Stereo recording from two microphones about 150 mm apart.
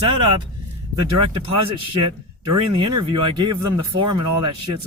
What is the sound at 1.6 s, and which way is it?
Speech, 35° right (ahead or behind).